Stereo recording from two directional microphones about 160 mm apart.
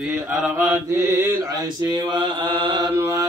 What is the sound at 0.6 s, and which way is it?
Mantra, 20° right (ahead or behind).